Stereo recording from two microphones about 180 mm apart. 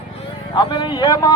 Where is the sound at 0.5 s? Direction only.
25° left (ahead or behind).